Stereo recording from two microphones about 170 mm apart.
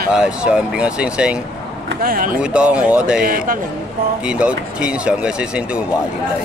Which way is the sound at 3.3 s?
55° right (ahead or behind).